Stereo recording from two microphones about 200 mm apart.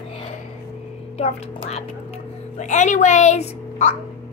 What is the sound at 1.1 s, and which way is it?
Speech, 30° left (ahead or behind).